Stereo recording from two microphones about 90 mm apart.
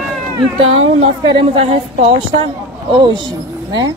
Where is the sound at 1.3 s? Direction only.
85° right.